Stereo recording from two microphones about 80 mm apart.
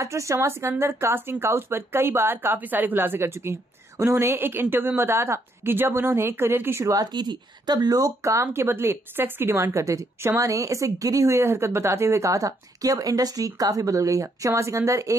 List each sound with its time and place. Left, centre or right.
0.0 s a woman's voice: right
6.9 s speech: right
8.2 s a woman's voice: right